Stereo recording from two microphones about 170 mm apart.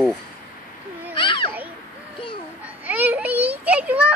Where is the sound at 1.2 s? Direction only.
30° left (ahead or behind).